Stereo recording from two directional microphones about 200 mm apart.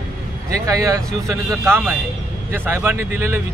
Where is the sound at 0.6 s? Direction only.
15° right (ahead or behind).